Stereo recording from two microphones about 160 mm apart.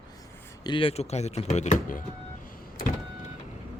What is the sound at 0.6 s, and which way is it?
Speech, 30° left (ahead or behind).